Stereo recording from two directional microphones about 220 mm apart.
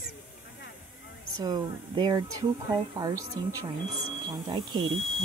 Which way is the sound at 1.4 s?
20° right (ahead or behind).